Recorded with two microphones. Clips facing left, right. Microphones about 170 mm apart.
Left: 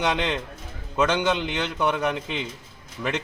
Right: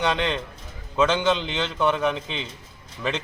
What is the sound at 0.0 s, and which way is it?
A man's voice, 15° left (ahead or behind).